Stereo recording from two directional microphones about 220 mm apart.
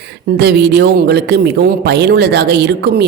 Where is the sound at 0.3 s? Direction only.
50° right (ahead or behind).